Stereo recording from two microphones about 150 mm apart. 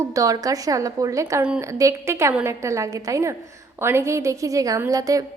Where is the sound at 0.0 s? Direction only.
20° right (ahead or behind).